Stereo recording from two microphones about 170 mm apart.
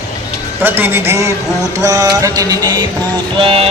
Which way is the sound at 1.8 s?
20° right (ahead or behind).